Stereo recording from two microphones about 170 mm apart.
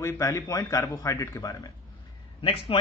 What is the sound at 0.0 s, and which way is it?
A man's voice, 15° left (ahead or behind).